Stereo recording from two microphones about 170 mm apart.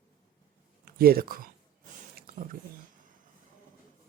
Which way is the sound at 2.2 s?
55° right (ahead or behind).